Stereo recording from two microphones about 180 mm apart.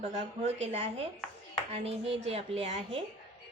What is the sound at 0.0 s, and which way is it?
A woman's voice, 40° right (ahead or behind).